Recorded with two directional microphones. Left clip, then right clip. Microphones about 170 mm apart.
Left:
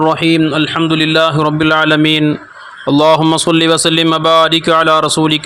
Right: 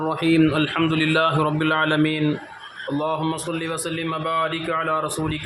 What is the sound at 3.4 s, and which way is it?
A man's voice, 60° left (ahead or behind).